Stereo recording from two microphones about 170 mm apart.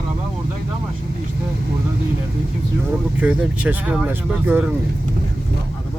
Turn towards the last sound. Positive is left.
turn(degrees=-10)  # may be behind; listen again after turning